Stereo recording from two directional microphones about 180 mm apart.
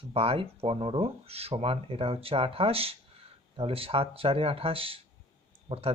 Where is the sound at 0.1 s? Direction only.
30° right (ahead or behind).